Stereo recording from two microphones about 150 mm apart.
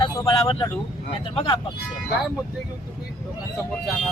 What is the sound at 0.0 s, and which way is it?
Speech, 30° left (ahead or behind).